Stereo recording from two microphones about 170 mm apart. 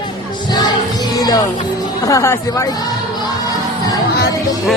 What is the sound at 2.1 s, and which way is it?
Speech, 20° left (ahead or behind).